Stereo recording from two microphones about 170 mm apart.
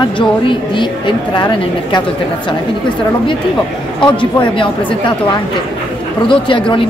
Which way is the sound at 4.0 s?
30° left (ahead or behind).